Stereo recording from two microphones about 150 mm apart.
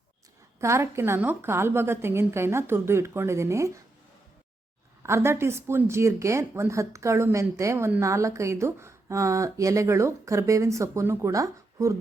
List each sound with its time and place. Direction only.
0.6 s a woman's voice: 20° right (ahead or behind)
5.0 s speech: 15° right (ahead or behind)